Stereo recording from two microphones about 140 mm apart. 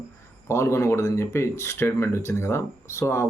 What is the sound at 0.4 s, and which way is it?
Speech, 20° left (ahead or behind).